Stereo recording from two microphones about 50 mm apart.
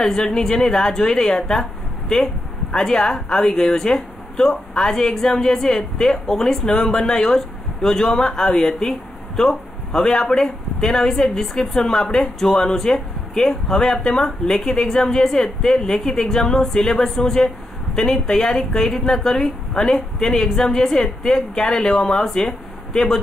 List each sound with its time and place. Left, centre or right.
0.0 s speech: centre